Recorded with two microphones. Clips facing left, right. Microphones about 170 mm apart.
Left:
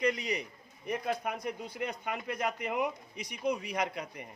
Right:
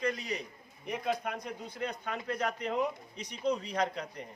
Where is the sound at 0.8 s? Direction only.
Centre (ahead or behind).